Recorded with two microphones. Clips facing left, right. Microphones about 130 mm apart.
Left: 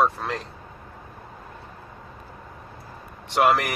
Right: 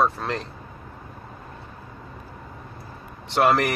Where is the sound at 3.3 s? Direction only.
10° left (ahead or behind).